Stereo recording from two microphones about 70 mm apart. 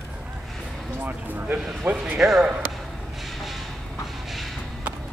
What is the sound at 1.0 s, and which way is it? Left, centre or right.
Speech, right.